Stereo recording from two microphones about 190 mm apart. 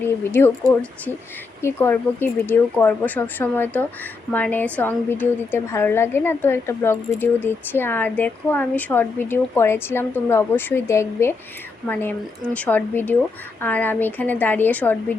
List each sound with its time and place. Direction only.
0.0 s a woman's voice: 10° left (ahead or behind)
1.6 s a woman's voice: 10° left (ahead or behind)
12.5 s a woman's voice: 10° left (ahead or behind)